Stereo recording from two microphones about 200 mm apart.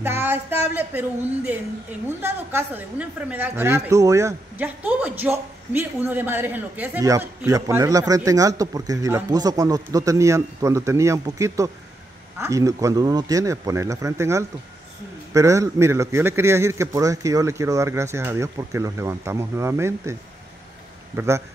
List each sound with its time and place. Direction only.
0.0 s a woman's voice: 10° right (ahead or behind)